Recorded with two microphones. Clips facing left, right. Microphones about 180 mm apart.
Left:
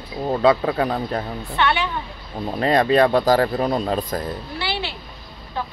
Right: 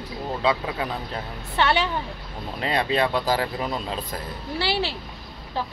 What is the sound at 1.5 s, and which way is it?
Speech, 35° right (ahead or behind).